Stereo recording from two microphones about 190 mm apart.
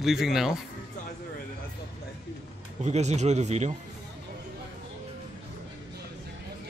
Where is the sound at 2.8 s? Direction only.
35° right (ahead or behind).